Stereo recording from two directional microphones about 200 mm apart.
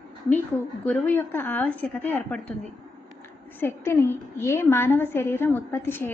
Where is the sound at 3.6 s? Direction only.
10° left (ahead or behind).